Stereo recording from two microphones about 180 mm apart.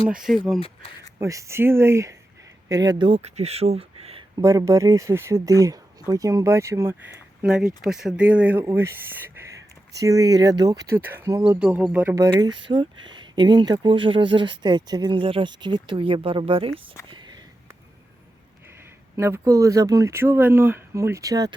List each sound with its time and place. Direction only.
0.3 s speech: centre (ahead or behind)
1.2 s speech: 15° right (ahead or behind); by 4.3 s 35° right (ahead or behind)
4.4 s speech: 15° right (ahead or behind)
7.4 s speech: 5° right (ahead or behind)
12.1 s speech: 20° right (ahead or behind)
17.1 s sniff: 25° right (ahead or behind)
19.1 s speech: 15° right (ahead or behind)